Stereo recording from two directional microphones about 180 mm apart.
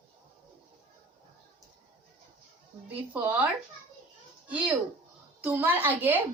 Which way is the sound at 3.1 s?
10° right (ahead or behind).